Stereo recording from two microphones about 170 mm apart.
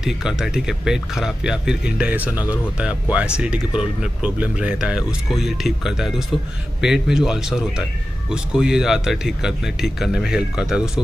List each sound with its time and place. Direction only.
0.0 s speech: 5° right (ahead or behind)
2.3 s speech: 20° left (ahead or behind)
2.8 s speech: 5° right (ahead or behind)